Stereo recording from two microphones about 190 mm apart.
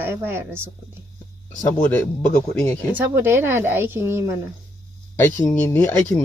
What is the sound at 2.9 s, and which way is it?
Speech, 10° right (ahead or behind).